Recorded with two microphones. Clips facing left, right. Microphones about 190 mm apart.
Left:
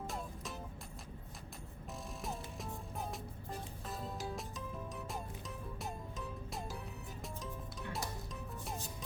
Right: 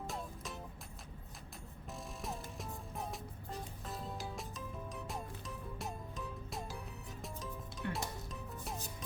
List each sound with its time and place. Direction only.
1.9 s music: centre (ahead or behind)
4.2 s music: centre (ahead or behind)
5.8 s music: centre (ahead or behind)
7.8 s music: 65° right (ahead or behind)
8.3 s music: centre (ahead or behind)